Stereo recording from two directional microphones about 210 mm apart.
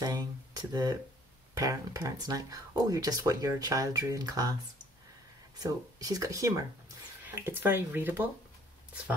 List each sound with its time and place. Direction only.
0.0 s speech: 20° right (ahead or behind)
5.6 s speech: 15° right (ahead or behind)